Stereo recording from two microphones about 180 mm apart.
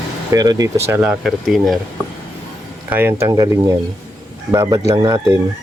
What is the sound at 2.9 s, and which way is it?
Speech, 15° right (ahead or behind).